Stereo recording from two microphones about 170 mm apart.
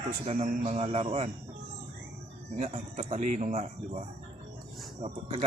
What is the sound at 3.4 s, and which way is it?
Speech, 50° right (ahead or behind).